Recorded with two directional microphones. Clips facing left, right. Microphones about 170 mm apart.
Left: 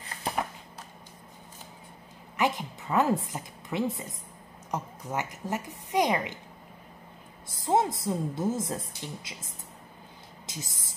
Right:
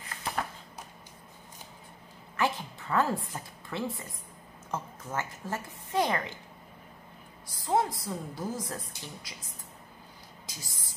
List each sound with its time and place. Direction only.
2.3 s a woman's voice: 15° left (ahead or behind)
7.4 s a woman's voice: 25° left (ahead or behind)
10.4 s a sound: 20° left (ahead or behind)